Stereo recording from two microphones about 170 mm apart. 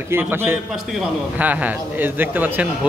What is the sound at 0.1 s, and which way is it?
Speech, 15° right (ahead or behind).